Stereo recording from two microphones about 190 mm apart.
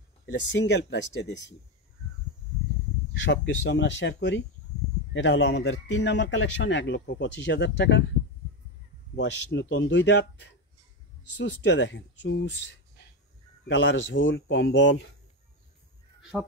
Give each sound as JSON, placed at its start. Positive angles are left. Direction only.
{"t": 0.3, "sound": "a man's voice", "side_deg": 70}
{"t": 3.3, "sound": "a man's voice", "side_deg": 65}
{"t": 9.1, "sound": "a man's voice", "side_deg": 70}
{"t": 11.3, "sound": "a man's voice", "side_deg": 75}
{"t": 16.2, "sound": "a sound", "side_deg": 0}